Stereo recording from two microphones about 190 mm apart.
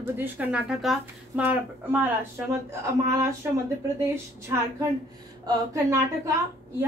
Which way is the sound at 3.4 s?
10° right (ahead or behind).